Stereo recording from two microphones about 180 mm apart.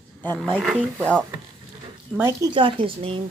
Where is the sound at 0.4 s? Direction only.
Centre (ahead or behind).